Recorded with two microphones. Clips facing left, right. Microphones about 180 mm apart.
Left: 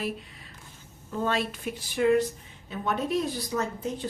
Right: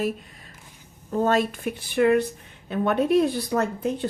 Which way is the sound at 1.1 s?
45° right (ahead or behind).